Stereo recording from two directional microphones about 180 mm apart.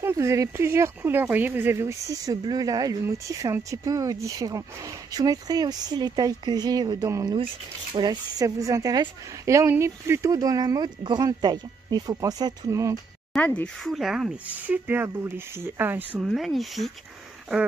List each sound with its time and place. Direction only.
0.0 s speech: 15° right (ahead or behind)
13.3 s speech: 5° left (ahead or behind); by 16.1 s 10° right (ahead or behind)
16.2 s speech: centre (ahead or behind)